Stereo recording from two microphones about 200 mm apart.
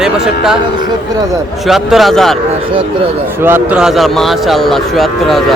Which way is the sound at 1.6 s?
Centre (ahead or behind).